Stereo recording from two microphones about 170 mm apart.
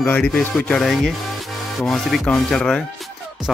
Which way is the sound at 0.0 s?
5° left (ahead or behind).